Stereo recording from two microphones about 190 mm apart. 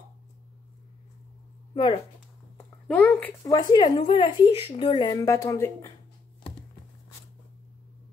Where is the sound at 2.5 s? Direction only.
10° left (ahead or behind).